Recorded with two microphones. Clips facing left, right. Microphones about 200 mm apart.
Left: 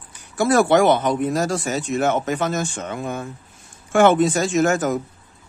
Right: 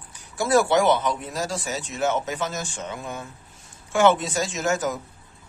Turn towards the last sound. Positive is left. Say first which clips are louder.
# left 7 dB
turn(degrees=55)  # may be behind; listen again after turning